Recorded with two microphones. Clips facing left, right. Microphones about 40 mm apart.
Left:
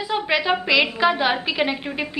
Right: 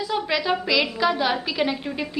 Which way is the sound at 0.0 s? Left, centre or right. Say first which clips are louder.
Left 2 dB; left.